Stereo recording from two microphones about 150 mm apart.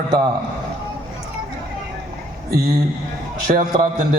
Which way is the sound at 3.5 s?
55° right (ahead or behind).